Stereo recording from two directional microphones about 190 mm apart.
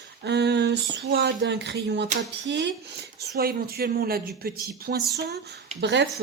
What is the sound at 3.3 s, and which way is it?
Speech, 55° right (ahead or behind).